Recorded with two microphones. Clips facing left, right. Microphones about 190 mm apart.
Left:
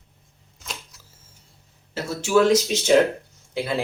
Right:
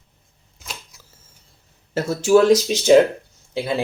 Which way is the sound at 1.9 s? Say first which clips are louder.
Right 6 dB; 45° right (ahead or behind).